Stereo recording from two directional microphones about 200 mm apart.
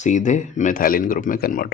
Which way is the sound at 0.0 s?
40° left (ahead or behind).